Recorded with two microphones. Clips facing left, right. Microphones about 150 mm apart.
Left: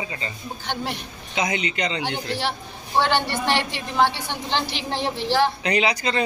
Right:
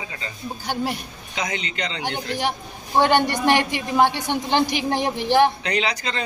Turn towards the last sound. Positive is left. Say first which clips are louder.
# left 3 dB
turn(degrees=10)  # may be behind; listen again after turning